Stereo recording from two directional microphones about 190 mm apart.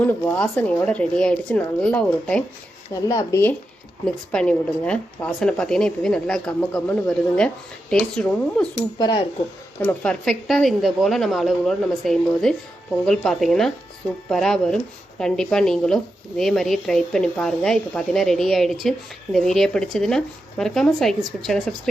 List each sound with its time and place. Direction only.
0.0 s speech: 10° left (ahead or behind)
2.9 s speech: 15° left (ahead or behind)
4.0 s a woman's voice: 5° left (ahead or behind)
9.0 s speech: 25° left (ahead or behind)
9.8 s a woman's voice: 5° left (ahead or behind)